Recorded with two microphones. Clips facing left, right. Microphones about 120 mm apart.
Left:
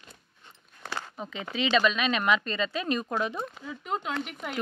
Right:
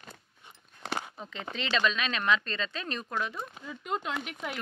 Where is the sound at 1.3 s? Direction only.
5° left (ahead or behind).